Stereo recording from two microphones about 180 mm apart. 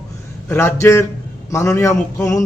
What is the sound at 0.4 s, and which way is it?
A man's voice, 15° left (ahead or behind).